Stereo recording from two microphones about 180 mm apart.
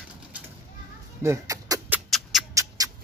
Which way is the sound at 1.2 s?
15° right (ahead or behind).